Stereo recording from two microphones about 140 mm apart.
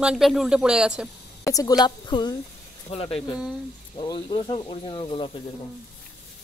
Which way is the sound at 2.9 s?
45° left (ahead or behind).